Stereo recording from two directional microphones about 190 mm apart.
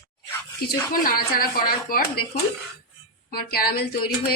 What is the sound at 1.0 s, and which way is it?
A woman's voice, 50° left (ahead or behind).